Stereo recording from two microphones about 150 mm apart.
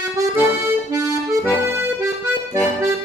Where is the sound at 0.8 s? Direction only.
20° right (ahead or behind).